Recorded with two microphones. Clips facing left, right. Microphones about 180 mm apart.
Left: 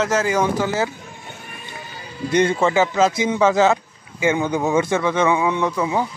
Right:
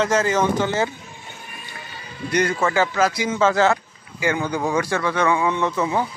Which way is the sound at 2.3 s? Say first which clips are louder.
Left 3 dB; 25° left (ahead or behind).